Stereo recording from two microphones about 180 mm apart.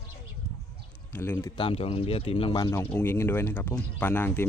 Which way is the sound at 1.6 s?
30° left (ahead or behind).